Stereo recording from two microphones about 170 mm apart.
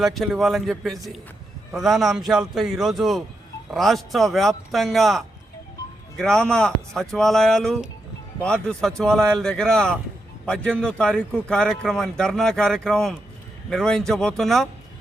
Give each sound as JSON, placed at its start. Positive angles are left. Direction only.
{"t": 0.0, "sound": "a man's voice", "side_deg": 0}